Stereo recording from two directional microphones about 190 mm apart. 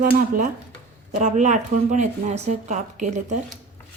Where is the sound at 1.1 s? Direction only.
40° right (ahead or behind).